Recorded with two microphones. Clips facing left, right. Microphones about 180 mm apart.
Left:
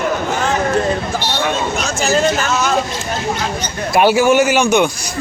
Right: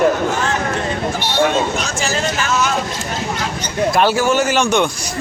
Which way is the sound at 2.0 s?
40° left (ahead or behind).